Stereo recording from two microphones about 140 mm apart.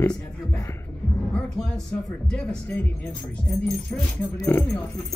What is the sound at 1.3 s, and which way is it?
Speech, 5° left (ahead or behind).